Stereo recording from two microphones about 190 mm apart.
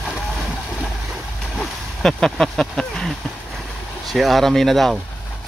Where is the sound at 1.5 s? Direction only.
Centre (ahead or behind).